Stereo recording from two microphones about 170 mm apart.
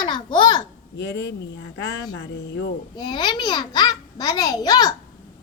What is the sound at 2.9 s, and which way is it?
A child's voice, 25° left (ahead or behind).